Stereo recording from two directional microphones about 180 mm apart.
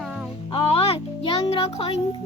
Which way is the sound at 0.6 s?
30° left (ahead or behind).